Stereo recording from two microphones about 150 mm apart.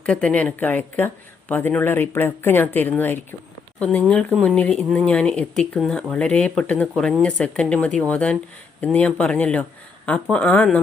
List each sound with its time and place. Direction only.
0.0 s speech: 5° left (ahead or behind)